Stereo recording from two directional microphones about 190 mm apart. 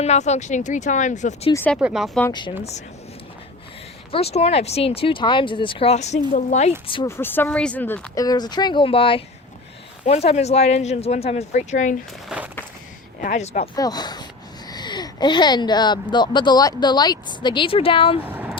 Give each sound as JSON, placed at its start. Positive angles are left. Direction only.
{"t": 0.0, "sound": "speech", "side_deg": 35}
{"t": 1.5, "sound": "speech", "side_deg": 10}
{"t": 4.1, "sound": "speech", "side_deg": 30}
{"t": 7.1, "sound": "speech", "side_deg": 10}
{"t": 8.1, "sound": "speech", "side_deg": 20}
{"t": 12.3, "sound": "a sound", "side_deg": -5}
{"t": 13.2, "sound": "speech", "side_deg": 35}
{"t": 13.7, "sound": "speech", "side_deg": 20}
{"t": 18.2, "sound": "vehicle", "side_deg": -10}